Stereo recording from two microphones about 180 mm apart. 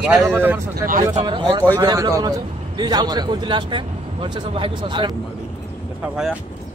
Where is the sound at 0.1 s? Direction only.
15° right (ahead or behind).